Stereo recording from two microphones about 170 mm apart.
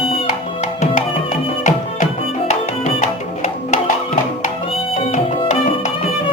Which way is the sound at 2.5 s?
40° left (ahead or behind).